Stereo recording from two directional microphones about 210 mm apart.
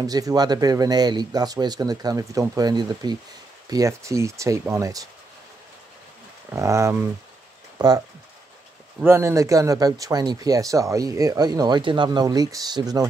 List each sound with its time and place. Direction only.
0.0 s speech: 15° right (ahead or behind)
6.5 s speech: 15° right (ahead or behind)
9.0 s speech: 10° right (ahead or behind)